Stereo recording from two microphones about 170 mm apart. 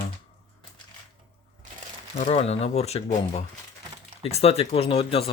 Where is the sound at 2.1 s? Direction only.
40° left (ahead or behind).